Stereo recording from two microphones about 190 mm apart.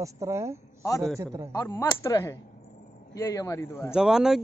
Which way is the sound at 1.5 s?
15° left (ahead or behind).